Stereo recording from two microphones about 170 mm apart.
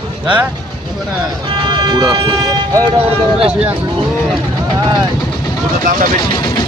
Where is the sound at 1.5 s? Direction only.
25° right (ahead or behind).